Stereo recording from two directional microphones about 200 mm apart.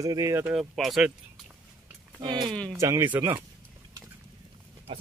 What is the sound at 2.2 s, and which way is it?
Speech, 20° right (ahead or behind).